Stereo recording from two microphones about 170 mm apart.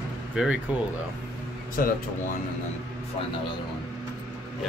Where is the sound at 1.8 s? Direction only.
55° left (ahead or behind).